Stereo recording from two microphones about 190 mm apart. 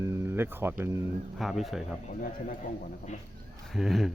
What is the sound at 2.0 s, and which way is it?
Speech, 40° left (ahead or behind).